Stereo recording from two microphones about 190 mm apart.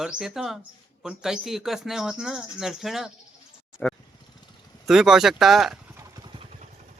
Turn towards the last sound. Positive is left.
turn(degrees=0)  # may be behind; listen again after turning